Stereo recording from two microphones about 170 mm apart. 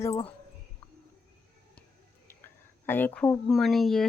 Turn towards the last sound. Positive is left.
turn(degrees=0)  # may be behind; listen again after turning